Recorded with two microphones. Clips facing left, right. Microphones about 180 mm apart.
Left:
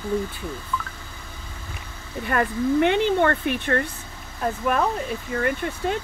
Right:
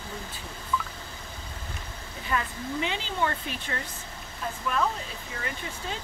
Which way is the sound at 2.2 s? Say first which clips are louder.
Left 9 dB; 60° left (ahead or behind).